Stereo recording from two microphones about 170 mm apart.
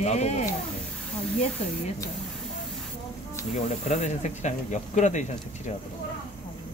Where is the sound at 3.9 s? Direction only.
45° left (ahead or behind).